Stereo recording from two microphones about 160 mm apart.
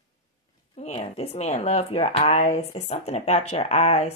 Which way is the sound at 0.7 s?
40° left (ahead or behind).